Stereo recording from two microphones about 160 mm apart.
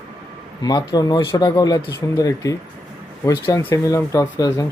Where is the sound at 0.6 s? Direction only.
25° left (ahead or behind).